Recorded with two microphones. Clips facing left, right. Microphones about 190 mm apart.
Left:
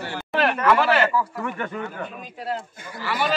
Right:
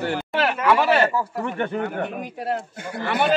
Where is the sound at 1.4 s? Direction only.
30° right (ahead or behind).